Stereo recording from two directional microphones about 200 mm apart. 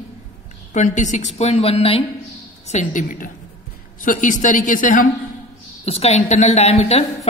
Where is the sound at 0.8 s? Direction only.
35° left (ahead or behind).